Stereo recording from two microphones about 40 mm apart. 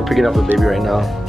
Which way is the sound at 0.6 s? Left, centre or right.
Centre.